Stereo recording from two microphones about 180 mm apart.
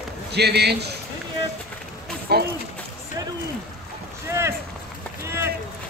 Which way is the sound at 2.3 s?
65° right (ahead or behind).